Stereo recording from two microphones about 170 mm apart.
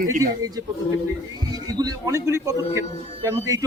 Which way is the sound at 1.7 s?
20° right (ahead or behind).